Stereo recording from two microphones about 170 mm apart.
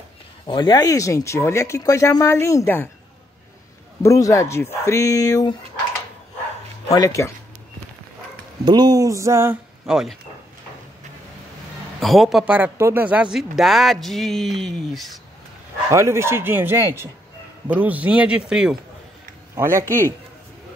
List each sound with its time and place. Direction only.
0.5 s speech: 25° left (ahead or behind)
4.0 s speech: 20° left (ahead or behind)
6.9 s speech: 20° left (ahead or behind)
8.6 s speech: 25° right (ahead or behind)
9.8 s speech: 5° right (ahead or behind)
12.0 s a man's voice: centre (ahead or behind)
15.9 s a man's voice: 15° right (ahead or behind)
19.5 s speech: 20° right (ahead or behind)
19.8 s speech: 15° left (ahead or behind)